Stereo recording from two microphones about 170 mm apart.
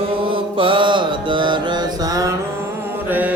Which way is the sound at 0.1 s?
30° right (ahead or behind).